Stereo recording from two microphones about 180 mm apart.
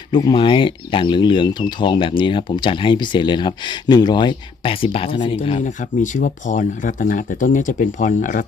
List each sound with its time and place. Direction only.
0.1 s speech: 25° left (ahead or behind)
5.6 s speech: 45° left (ahead or behind)